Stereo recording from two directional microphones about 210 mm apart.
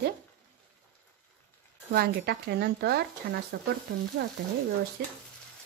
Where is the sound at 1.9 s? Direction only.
50° right (ahead or behind).